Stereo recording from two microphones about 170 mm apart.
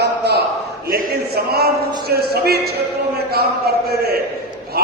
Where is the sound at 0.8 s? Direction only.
60° right (ahead or behind).